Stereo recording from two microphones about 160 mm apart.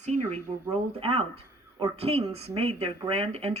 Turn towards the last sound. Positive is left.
turn(degrees=-40)  # may be behind; listen again after turning